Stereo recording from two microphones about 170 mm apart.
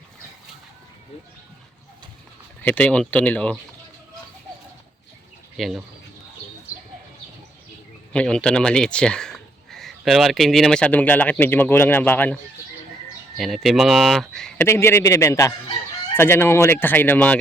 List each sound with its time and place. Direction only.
2.6 s speech: 10° left (ahead or behind)
5.5 s speech: centre (ahead or behind)
8.1 s speech: 5° left (ahead or behind)
13.4 s speech: centre (ahead or behind)
14.6 s speech: 15° left (ahead or behind)